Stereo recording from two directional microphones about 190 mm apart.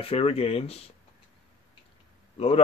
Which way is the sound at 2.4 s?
30° left (ahead or behind).